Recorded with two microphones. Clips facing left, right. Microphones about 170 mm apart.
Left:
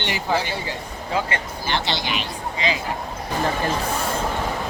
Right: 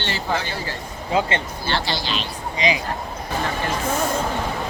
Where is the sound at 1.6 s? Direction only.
20° left (ahead or behind).